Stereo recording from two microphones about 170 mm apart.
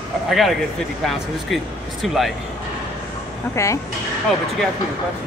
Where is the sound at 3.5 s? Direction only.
15° left (ahead or behind).